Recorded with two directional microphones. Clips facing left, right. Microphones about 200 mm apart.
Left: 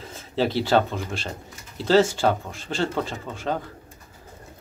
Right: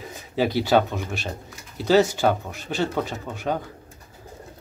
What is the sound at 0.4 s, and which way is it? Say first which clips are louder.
Speech: right 1 dB; 15° right (ahead or behind).